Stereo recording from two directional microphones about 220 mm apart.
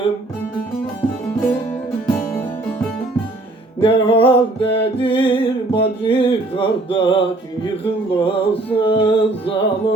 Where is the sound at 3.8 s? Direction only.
25° left (ahead or behind).